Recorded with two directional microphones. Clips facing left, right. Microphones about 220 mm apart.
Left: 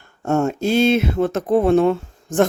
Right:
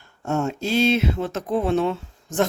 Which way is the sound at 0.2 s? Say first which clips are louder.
Left 5 dB; 50° left (ahead or behind).